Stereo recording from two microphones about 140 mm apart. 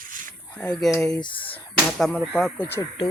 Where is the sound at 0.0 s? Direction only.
75° right (ahead or behind).